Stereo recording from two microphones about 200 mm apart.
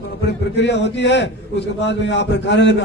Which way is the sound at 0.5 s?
60° left (ahead or behind).